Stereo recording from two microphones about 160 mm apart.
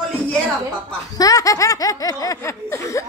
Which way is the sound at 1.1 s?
20° left (ahead or behind).